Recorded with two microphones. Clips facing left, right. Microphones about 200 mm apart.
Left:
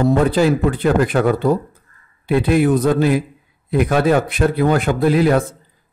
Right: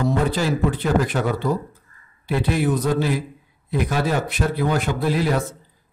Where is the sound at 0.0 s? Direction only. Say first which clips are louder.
Left 7 dB; 55° left (ahead or behind).